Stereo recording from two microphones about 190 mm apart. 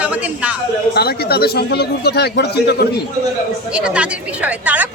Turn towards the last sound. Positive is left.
turn(degrees=-5)  # may be behind; listen again after turning